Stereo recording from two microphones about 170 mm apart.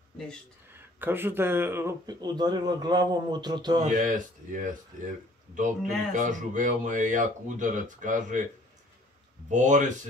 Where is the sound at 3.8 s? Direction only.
50° right (ahead or behind).